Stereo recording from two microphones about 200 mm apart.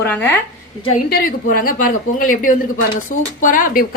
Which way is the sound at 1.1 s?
45° left (ahead or behind).